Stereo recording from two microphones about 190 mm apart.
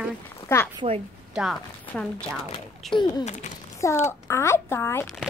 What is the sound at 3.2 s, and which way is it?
Speech, 40° left (ahead or behind).